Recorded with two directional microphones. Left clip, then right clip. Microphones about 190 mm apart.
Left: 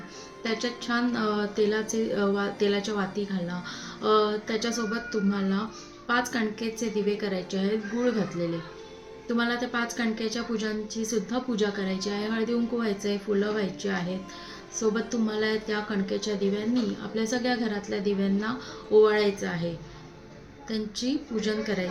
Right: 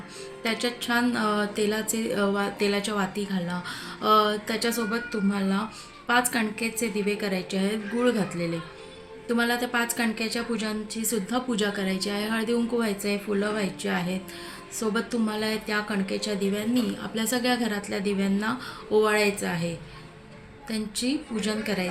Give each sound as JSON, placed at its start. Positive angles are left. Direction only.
{"t": 0.4, "sound": "speech", "side_deg": -10}
{"t": 20.7, "sound": "speech", "side_deg": -10}